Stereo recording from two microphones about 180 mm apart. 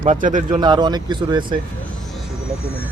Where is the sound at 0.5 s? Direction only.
25° right (ahead or behind).